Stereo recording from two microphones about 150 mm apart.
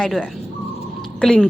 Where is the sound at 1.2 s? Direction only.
5° left (ahead or behind).